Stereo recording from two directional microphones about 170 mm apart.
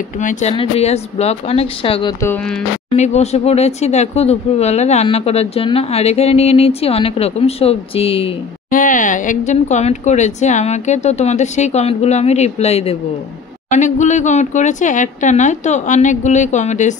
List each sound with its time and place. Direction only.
0.2 s speech: 45° left (ahead or behind)
8.6 s speech: 50° left (ahead or behind)